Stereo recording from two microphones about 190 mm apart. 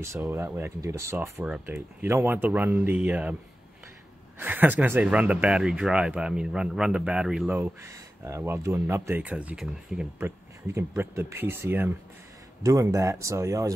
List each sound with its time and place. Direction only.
0.0 s speech: 15° right (ahead or behind)
4.4 s speech: 10° right (ahead or behind)